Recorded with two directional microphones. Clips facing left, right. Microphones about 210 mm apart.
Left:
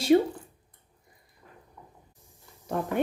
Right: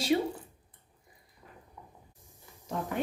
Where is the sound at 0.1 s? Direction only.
50° left (ahead or behind).